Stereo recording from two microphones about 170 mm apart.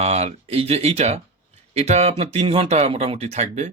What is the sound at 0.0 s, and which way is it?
Speech, 40° right (ahead or behind).